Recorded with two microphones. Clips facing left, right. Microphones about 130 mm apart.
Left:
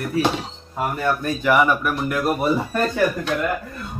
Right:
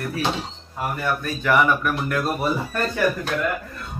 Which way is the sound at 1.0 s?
10° left (ahead or behind).